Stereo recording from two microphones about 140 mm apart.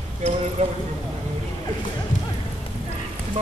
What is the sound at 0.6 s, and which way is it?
Speech, 50° right (ahead or behind).